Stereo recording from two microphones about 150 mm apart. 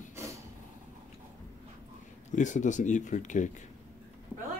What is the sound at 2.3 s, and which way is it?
Speech, 55° left (ahead or behind).